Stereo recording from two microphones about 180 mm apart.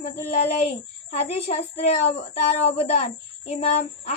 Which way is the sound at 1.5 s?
35° left (ahead or behind).